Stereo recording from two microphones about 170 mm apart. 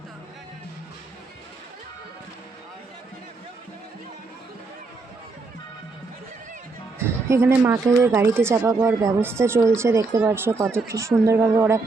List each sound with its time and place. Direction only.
7.3 s speech: 15° right (ahead or behind)